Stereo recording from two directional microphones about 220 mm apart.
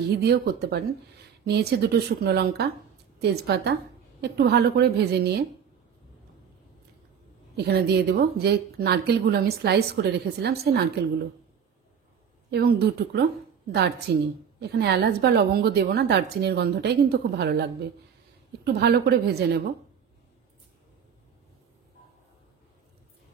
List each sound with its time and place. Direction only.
0.1 s speech: 45° right (ahead or behind)
7.5 s speech: 50° right (ahead or behind)
12.4 s speech: 50° right (ahead or behind)